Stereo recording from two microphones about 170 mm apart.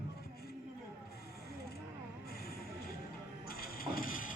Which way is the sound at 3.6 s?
60° left (ahead or behind).